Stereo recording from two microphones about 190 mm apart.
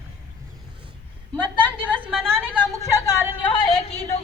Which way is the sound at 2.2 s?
10° right (ahead or behind).